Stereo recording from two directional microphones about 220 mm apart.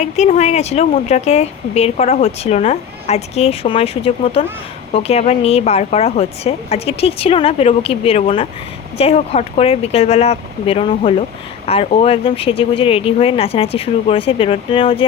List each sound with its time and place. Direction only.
0.0 s a woman's voice: 30° left (ahead or behind)